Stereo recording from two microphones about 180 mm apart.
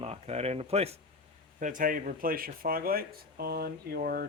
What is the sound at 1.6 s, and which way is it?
Speech, 45° right (ahead or behind).